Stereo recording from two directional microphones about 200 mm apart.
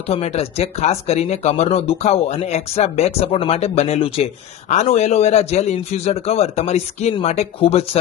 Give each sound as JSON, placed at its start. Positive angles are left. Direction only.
{"t": 0.1, "sound": "speech", "side_deg": 30}